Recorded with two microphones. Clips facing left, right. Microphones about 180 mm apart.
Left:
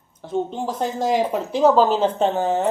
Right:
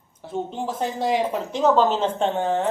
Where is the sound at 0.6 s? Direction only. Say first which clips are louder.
Left 2 dB; 40° left (ahead or behind).